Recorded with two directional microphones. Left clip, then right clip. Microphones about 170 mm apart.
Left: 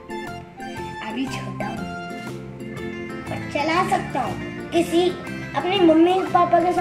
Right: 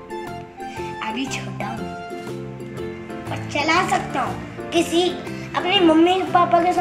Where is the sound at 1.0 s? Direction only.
5° left (ahead or behind).